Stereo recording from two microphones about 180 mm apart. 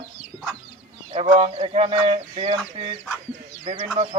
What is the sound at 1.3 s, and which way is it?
Speech, 35° right (ahead or behind).